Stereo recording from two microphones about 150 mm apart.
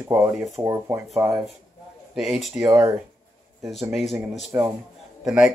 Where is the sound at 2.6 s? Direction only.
20° right (ahead or behind).